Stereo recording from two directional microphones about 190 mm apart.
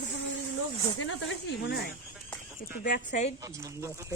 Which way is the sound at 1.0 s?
85° left.